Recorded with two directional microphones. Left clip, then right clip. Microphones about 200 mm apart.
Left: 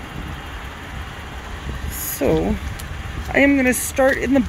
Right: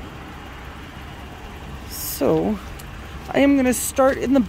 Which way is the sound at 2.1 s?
25° right (ahead or behind).